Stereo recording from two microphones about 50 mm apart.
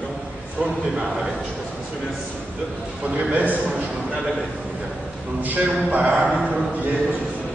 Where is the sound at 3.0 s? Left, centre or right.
Right.